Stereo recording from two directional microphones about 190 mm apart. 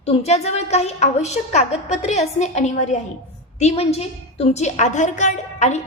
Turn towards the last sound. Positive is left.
turn(degrees=40)  # may be behind; listen again after turning